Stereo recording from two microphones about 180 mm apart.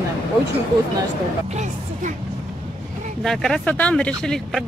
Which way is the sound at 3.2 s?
5° left (ahead or behind).